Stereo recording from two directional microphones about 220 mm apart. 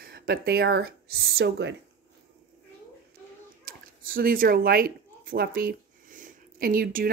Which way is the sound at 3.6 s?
40° right (ahead or behind).